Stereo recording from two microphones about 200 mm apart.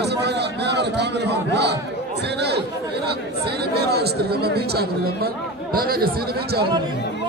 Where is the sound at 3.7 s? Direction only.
55° right (ahead or behind).